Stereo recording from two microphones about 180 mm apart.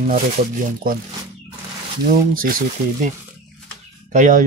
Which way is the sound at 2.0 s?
50° right (ahead or behind).